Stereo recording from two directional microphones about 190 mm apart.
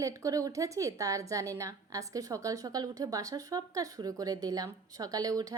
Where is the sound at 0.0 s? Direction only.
15° right (ahead or behind).